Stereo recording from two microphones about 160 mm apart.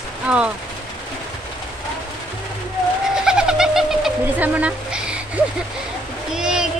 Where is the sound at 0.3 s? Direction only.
5° right (ahead or behind).